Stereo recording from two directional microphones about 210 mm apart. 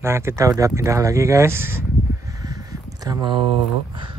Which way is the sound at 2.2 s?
15° right (ahead or behind).